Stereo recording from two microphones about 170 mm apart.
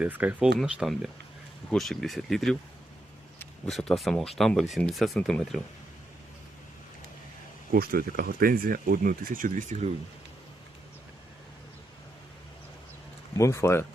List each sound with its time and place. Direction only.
0.0 s speech: 10° right (ahead or behind)
3.7 s speech: centre (ahead or behind)
7.7 s speech: 60° right (ahead or behind)
13.3 s speech: 15° left (ahead or behind)